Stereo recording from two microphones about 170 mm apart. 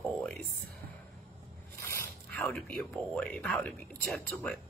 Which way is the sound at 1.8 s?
15° left (ahead or behind).